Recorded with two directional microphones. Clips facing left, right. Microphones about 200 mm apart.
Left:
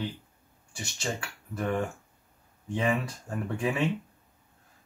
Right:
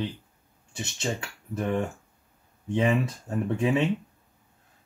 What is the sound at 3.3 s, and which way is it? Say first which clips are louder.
Speech: right 5 dB; 20° right (ahead or behind).